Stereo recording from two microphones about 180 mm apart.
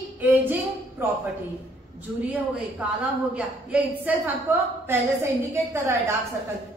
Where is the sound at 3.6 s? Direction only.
10° right (ahead or behind).